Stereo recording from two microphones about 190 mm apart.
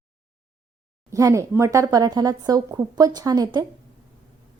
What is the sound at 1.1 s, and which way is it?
A woman's voice, 15° right (ahead or behind).